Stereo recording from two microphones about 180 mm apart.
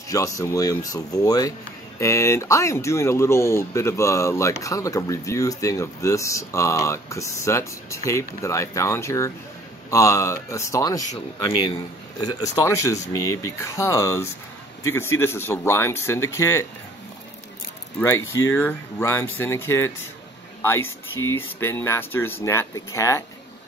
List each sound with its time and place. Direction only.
0.1 s speech: 20° left (ahead or behind)
18.0 s speech: 15° left (ahead or behind)